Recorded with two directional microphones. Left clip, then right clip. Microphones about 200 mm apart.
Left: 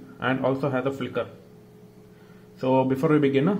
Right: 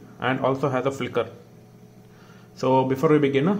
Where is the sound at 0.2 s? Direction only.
5° right (ahead or behind).